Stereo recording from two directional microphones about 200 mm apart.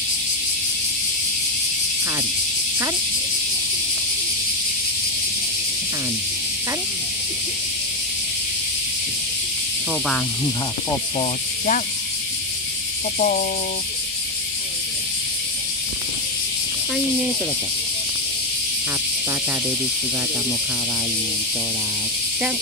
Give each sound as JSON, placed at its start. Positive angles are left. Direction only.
{"t": 11.1, "sound": "speech", "side_deg": 40}
{"t": 13.2, "sound": "speech", "side_deg": 40}